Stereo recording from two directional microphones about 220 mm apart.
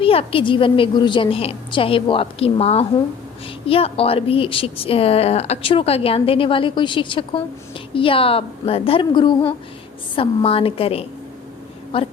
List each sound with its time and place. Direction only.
0.0 s a woman's voice: 25° left (ahead or behind)